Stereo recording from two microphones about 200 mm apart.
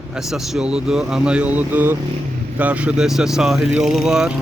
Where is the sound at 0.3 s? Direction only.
5° right (ahead or behind).